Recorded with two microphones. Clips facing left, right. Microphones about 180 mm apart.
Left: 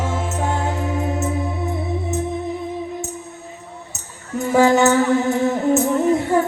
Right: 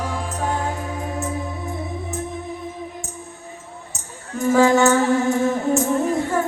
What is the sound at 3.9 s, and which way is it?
Music, 20° left (ahead or behind).